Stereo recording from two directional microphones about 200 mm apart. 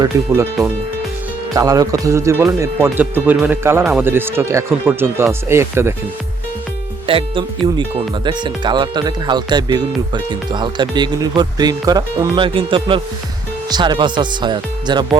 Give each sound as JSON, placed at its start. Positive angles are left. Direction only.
{"t": 1.5, "sound": "speech", "side_deg": -15}
{"t": 7.1, "sound": "speech", "side_deg": -25}